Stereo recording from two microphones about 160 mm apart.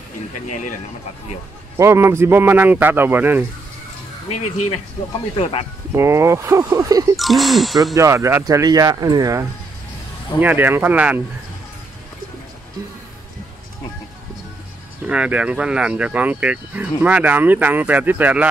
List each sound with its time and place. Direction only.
1.8 s speech: 15° right (ahead or behind)
5.4 s speech: 40° left (ahead or behind)
5.9 s speech: 15° right (ahead or behind)
7.2 s speech: centre (ahead or behind)
7.9 s speech: 20° right (ahead or behind)
15.0 s speech: 5° right (ahead or behind)